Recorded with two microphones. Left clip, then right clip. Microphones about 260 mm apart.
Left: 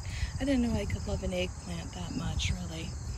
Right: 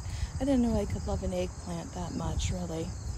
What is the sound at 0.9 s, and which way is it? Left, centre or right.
Cricket, centre.